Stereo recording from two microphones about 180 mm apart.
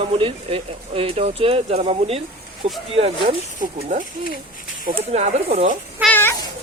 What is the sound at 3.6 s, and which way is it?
Speech, 45° right (ahead or behind).